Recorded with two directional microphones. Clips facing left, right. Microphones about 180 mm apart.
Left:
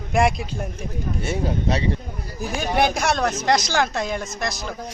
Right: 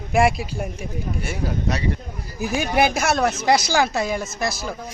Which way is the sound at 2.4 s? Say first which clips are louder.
Right 2 dB; 5° right (ahead or behind).